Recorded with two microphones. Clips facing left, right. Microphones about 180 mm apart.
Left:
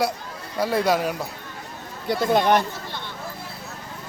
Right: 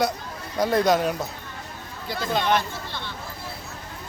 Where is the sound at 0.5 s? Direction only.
5° left (ahead or behind).